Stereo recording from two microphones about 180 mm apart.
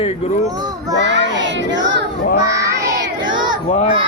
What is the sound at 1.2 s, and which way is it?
Child singing, 85° right.